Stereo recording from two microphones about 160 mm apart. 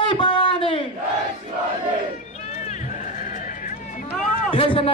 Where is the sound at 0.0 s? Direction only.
30° left (ahead or behind).